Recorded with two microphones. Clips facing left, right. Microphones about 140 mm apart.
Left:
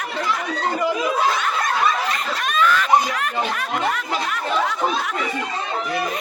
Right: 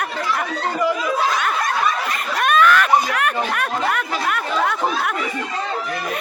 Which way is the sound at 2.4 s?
60° right (ahead or behind).